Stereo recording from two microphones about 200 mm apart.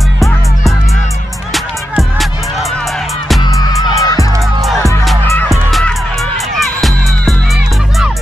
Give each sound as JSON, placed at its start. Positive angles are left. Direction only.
{"t": 1.5, "sound": "music", "side_deg": 0}
{"t": 3.4, "sound": "music", "side_deg": 20}
{"t": 5.5, "sound": "music", "side_deg": 0}